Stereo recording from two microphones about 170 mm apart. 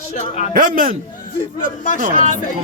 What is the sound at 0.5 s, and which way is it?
Speech, 55° right (ahead or behind).